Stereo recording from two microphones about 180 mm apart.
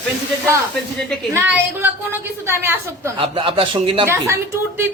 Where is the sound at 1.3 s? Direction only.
10° right (ahead or behind).